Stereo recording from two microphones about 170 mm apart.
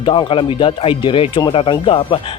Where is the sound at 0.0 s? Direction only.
30° left (ahead or behind).